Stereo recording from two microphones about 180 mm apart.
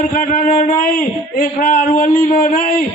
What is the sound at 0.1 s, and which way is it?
A man's voice, 45° left (ahead or behind).